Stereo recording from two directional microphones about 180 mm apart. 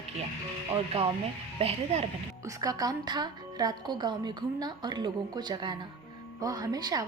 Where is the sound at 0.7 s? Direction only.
35° right (ahead or behind).